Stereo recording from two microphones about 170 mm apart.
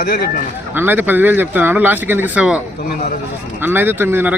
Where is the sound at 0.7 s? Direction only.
10° right (ahead or behind).